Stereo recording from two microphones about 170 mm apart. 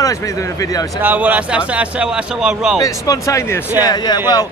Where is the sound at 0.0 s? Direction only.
20° left (ahead or behind).